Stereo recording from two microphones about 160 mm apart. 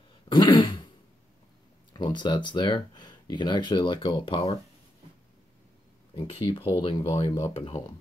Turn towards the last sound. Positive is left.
turn(degrees=35)  # may be behind; listen again after turning